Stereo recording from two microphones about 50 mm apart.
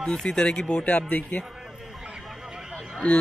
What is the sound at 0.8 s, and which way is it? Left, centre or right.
Speech, left.